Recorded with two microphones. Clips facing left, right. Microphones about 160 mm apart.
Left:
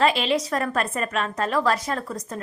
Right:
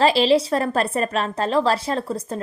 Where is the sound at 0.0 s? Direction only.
30° right (ahead or behind).